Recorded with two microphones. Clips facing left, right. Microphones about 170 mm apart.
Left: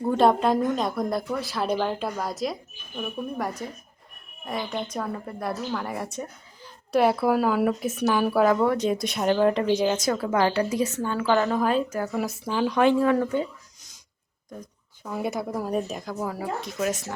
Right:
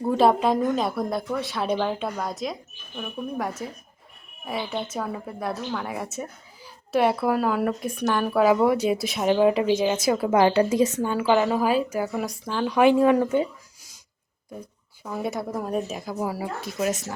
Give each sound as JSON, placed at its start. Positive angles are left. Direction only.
{"t": 0.0, "sound": "speech", "side_deg": 0}
{"t": 8.4, "sound": "a woman's voice", "side_deg": -10}
{"t": 10.2, "sound": "a woman's voice", "side_deg": -20}
{"t": 12.8, "sound": "a woman's voice", "side_deg": -15}
{"t": 14.5, "sound": "a woman's voice", "side_deg": -5}